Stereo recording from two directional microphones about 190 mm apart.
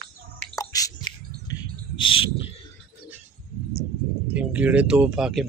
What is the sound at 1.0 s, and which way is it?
Bird, 25° left (ahead or behind).